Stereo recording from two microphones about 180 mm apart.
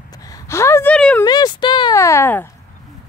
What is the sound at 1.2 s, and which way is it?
Speech, 20° left (ahead or behind).